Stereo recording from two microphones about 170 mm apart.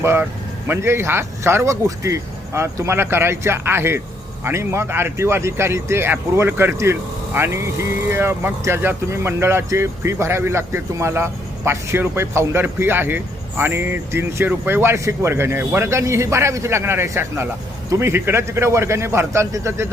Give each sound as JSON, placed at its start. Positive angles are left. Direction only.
{"t": 0.0, "sound": "speech", "side_deg": -15}